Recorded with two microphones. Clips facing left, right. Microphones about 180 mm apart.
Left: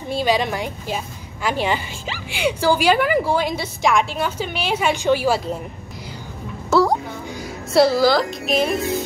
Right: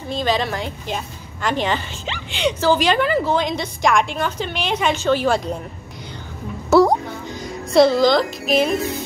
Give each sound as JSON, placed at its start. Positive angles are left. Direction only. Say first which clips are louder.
{"t": 0.1, "sound": "a woman's voice", "louder": "left 1 dB", "side_deg": 10}
{"t": 6.7, "sound": "music", "louder": "right 3 dB", "side_deg": -20}
{"t": 7.2, "sound": "speech", "louder": "right 1 dB", "side_deg": 5}